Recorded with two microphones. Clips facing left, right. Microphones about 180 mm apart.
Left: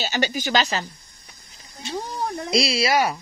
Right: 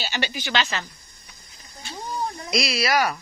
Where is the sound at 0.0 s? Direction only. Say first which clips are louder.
Left 5 dB; 40° left (ahead or behind).